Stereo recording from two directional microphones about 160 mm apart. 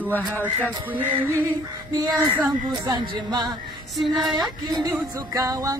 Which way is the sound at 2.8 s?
30° right (ahead or behind).